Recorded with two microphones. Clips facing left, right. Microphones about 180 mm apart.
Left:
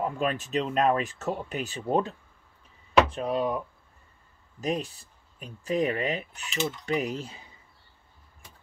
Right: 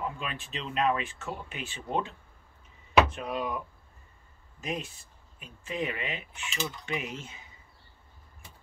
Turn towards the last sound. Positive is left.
turn(degrees=35)  # may be behind; listen again after turning